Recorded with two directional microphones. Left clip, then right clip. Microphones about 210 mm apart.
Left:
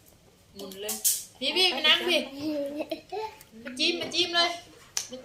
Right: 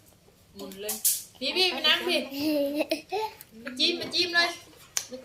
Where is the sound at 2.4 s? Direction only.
45° right (ahead or behind).